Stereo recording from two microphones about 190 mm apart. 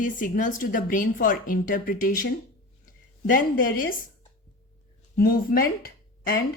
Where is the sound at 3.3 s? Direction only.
45° left (ahead or behind).